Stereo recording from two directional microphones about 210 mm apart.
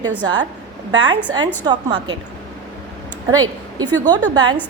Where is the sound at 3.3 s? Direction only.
20° right (ahead or behind).